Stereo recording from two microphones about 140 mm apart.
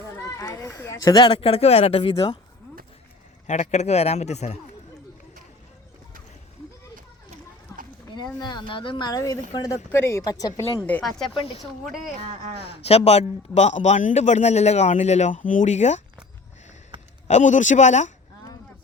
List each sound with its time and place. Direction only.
0.3 s children playing: 20° left (ahead or behind)
0.9 s a woman's voice: 30° left (ahead or behind)
1.3 s a man's voice: 45° left (ahead or behind)
3.4 s a man's voice: 55° left (ahead or behind)
7.7 s a sound: 25° left (ahead or behind)
8.1 s a woman's voice: 30° left (ahead or behind)
11.3 s speech: 40° left (ahead or behind)
11.6 s speech: centre (ahead or behind)
12.6 s a man's voice: 45° left (ahead or behind)
17.2 s speech: 60° left (ahead or behind)